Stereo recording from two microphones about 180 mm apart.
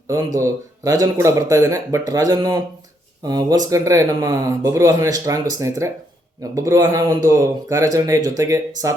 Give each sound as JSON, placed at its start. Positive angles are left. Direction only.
{"t": 0.1, "sound": "speech", "side_deg": -15}